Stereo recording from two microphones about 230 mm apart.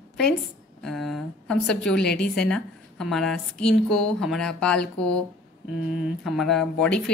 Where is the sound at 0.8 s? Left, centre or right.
Centre.